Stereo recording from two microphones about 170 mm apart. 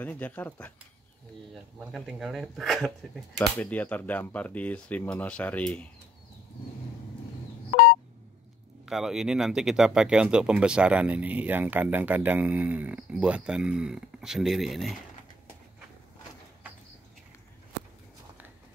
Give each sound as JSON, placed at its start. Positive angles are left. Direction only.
{"t": 0.0, "sound": "speech", "side_deg": 10}
{"t": 1.5, "sound": "speech", "side_deg": 0}
{"t": 7.7, "sound": "telephone dialing", "side_deg": 70}
{"t": 8.8, "sound": "speech", "side_deg": -5}